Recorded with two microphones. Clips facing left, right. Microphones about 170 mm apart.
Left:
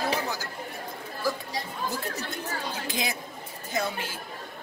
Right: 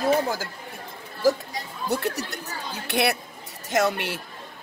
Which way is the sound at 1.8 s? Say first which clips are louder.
Right 10 dB; 75° right (ahead or behind).